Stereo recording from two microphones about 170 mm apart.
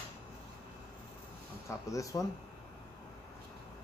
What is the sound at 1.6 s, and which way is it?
Speech, 20° left (ahead or behind).